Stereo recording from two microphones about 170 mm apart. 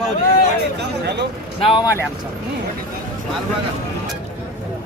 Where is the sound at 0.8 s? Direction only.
90° right.